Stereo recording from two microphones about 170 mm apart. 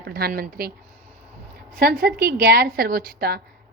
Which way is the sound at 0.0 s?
65° right (ahead or behind).